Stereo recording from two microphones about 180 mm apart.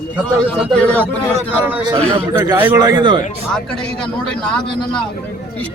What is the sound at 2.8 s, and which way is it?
Speech, 25° right (ahead or behind).